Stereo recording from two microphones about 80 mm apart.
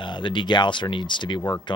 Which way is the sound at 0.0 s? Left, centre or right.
Left.